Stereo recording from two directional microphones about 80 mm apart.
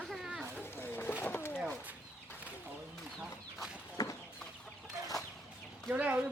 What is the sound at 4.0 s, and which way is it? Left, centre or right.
Chicken, left.